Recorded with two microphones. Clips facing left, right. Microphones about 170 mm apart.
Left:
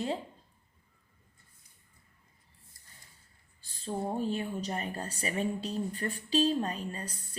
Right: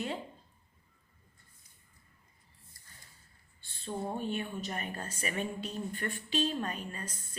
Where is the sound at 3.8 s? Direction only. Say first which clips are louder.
Left 3 dB; 30° left (ahead or behind).